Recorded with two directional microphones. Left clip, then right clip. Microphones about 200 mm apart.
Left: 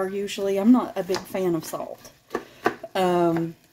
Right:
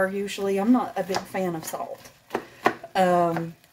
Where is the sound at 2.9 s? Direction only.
40° left (ahead or behind).